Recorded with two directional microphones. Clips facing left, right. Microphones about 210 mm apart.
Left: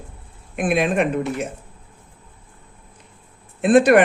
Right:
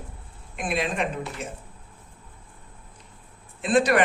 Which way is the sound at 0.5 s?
55° left (ahead or behind).